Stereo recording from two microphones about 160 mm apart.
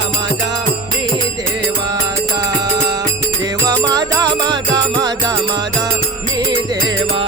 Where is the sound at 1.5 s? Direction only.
25° right (ahead or behind).